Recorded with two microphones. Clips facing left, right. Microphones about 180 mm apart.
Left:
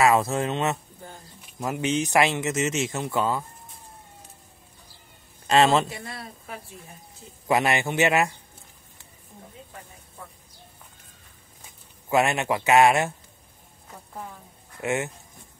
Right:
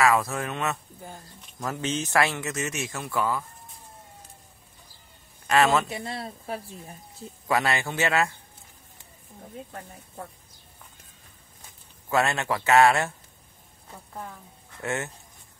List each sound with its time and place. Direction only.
0.0 s speech: 25° left (ahead or behind)
5.5 s speech: 25° left (ahead or behind)
5.9 s speech: 25° right (ahead or behind)
7.4 s speech: 20° left (ahead or behind)
12.1 s speech: 15° left (ahead or behind)
14.8 s speech: 15° left (ahead or behind)